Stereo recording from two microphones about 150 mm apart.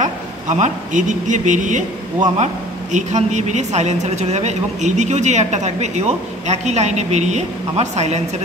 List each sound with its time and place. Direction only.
0.0 s a woman's voice: 55° right (ahead or behind)